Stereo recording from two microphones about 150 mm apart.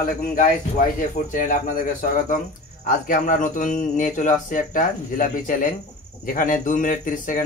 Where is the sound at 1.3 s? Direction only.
65° left (ahead or behind).